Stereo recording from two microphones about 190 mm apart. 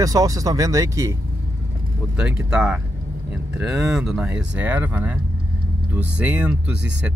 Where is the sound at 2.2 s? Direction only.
5° right (ahead or behind).